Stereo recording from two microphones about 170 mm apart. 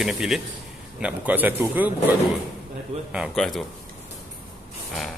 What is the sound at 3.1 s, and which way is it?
Speech, centre (ahead or behind).